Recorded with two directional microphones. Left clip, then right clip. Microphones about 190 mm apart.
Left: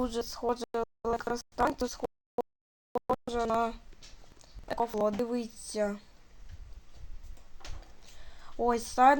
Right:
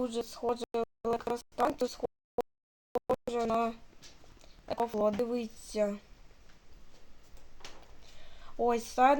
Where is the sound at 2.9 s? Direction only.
15° left (ahead or behind).